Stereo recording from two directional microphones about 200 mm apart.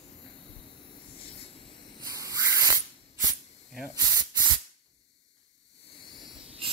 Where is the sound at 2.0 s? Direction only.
15° right (ahead or behind).